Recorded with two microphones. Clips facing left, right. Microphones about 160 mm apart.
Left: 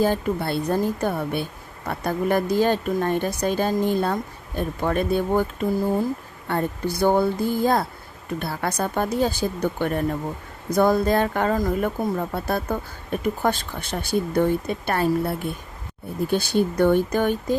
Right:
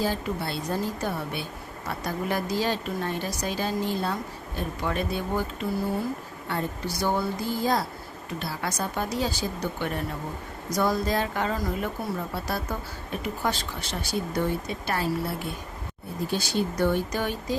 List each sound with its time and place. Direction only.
0.0 s a woman's voice: 55° left (ahead or behind)